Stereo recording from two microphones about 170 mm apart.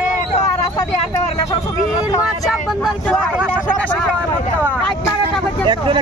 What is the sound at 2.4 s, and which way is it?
Speech, centre (ahead or behind).